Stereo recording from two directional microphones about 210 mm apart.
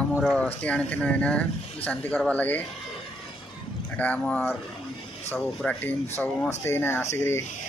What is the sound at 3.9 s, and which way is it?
Speech, 5° left (ahead or behind).